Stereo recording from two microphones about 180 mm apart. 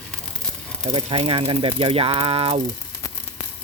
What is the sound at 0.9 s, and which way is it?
Speech, 30° right (ahead or behind).